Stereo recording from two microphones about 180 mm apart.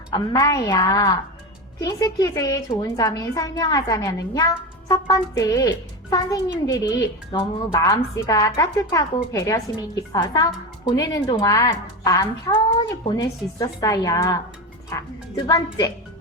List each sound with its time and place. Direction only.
0.1 s a woman's voice: 20° left (ahead or behind)